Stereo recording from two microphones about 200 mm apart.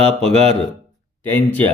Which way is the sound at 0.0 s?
30° right (ahead or behind).